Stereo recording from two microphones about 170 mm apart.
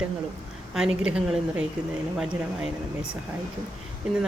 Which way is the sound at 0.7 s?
5° right (ahead or behind).